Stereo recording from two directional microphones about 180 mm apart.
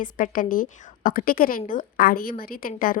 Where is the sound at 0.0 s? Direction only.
50° left (ahead or behind).